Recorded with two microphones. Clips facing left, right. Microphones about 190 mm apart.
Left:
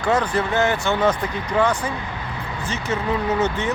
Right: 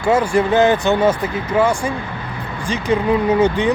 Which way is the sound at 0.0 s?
10° right (ahead or behind).